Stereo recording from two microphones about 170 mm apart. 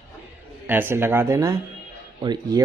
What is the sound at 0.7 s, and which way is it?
Speech, 10° right (ahead or behind).